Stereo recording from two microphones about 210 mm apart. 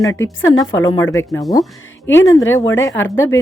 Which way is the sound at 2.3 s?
65° left (ahead or behind).